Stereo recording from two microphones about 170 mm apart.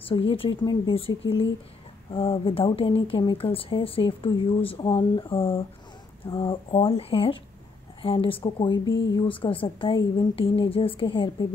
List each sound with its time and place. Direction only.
0.3 s speech: 30° left (ahead or behind)